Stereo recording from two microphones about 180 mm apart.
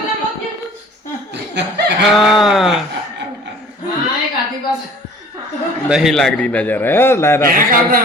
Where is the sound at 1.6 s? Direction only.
75° right (ahead or behind).